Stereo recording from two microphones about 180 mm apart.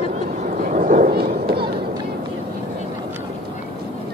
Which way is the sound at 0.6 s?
50° right (ahead or behind).